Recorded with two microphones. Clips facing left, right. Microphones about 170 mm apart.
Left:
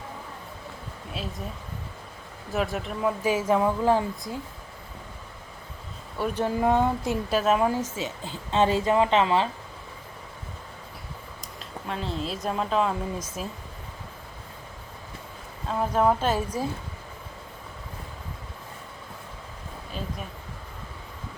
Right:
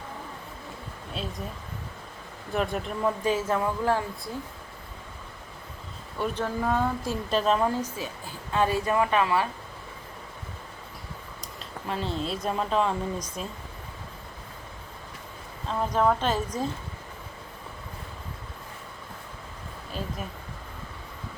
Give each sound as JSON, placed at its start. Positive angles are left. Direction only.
{"t": 1.1, "sound": "speech", "side_deg": 0}
{"t": 2.5, "sound": "speech", "side_deg": 0}
{"t": 6.1, "sound": "speech", "side_deg": 5}
{"t": 6.4, "sound": "speech", "side_deg": 20}
{"t": 7.3, "sound": "speech", "side_deg": 5}
{"t": 7.9, "sound": "speech", "side_deg": 20}
{"t": 11.9, "sound": "speech", "side_deg": 0}
{"t": 15.8, "sound": "speech", "side_deg": 10}